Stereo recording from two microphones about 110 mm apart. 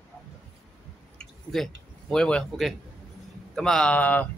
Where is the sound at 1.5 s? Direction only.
5° left (ahead or behind).